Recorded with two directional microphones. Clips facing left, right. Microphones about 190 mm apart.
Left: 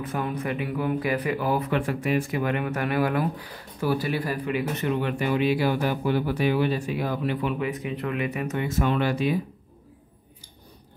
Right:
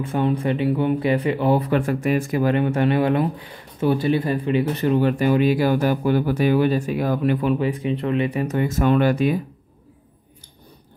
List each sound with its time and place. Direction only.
0.0 s speech: 30° right (ahead or behind)
1.7 s speech: 45° right (ahead or behind)
7.5 s speech: 30° right (ahead or behind)
8.5 s speech: 45° right (ahead or behind)